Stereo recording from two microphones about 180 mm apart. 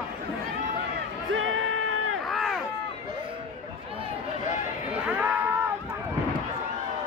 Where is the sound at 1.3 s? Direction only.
90° right.